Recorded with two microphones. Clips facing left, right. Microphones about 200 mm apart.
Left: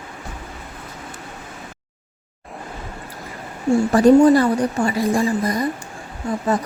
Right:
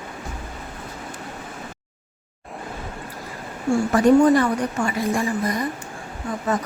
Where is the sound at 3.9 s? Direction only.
30° left (ahead or behind).